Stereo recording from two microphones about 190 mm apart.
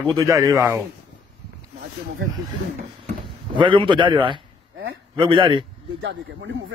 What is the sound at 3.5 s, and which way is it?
A man's voice, 25° right (ahead or behind).